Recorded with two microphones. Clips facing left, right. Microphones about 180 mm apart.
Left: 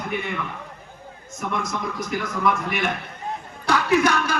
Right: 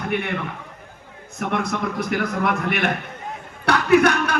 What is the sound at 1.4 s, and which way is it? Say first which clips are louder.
A man's voice: right 4 dB; 65° right (ahead or behind).